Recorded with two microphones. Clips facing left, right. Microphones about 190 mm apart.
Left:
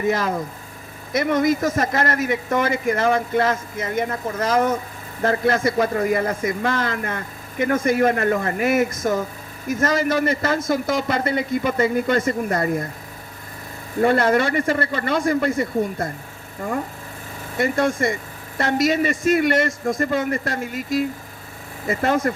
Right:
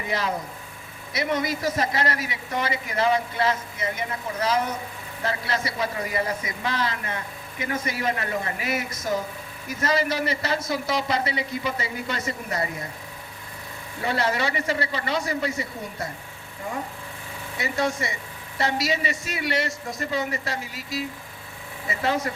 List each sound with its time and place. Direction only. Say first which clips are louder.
0.0 s speech: left 6 dB; 50° left (ahead or behind)
14.0 s speech: left 8 dB; 50° left (ahead or behind)